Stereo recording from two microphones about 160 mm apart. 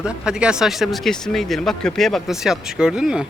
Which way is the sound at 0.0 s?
5° right (ahead or behind).